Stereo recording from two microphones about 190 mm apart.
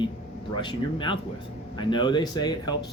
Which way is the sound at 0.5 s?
25° left (ahead or behind).